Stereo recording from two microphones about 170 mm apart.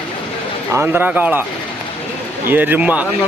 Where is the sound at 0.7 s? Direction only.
10° right (ahead or behind).